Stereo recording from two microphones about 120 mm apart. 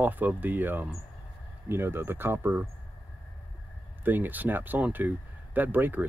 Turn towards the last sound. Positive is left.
turn(degrees=-15)  # may be behind; listen again after turning